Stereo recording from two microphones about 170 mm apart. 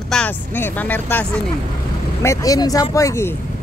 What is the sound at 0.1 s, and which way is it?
Speech, 10° left (ahead or behind).